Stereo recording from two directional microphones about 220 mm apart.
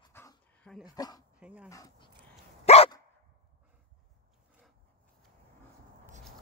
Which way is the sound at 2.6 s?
25° left (ahead or behind).